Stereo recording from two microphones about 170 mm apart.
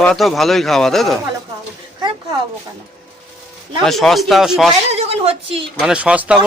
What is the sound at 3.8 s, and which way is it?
Speech, centre (ahead or behind).